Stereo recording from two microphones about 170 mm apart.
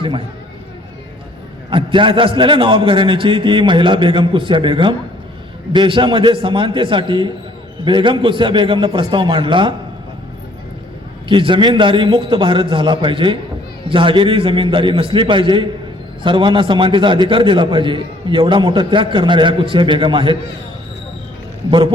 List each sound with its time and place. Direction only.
0.0 s a man's voice: 30° right (ahead or behind)
1.7 s a man's voice: 30° right (ahead or behind)
11.3 s a man's voice: 30° right (ahead or behind)
21.7 s a man's voice: 30° right (ahead or behind)